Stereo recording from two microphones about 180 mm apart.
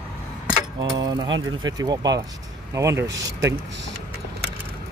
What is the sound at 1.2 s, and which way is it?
Speech, 90° right.